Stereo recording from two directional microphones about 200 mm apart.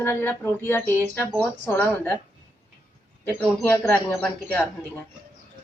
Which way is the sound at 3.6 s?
10° left (ahead or behind).